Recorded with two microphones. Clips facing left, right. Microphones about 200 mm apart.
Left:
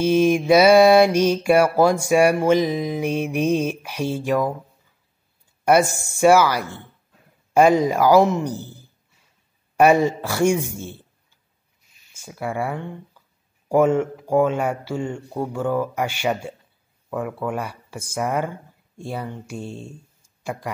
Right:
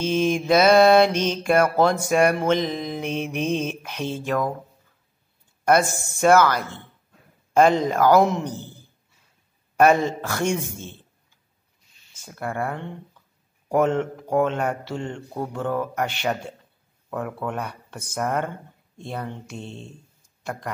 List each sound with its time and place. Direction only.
0.0 s mantra: 10° left (ahead or behind)
5.7 s mantra: 10° left (ahead or behind)
9.8 s mantra: 10° left (ahead or behind)
12.3 s speech: 5° left (ahead or behind)